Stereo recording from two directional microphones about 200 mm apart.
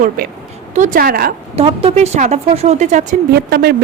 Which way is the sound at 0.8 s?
45° right (ahead or behind).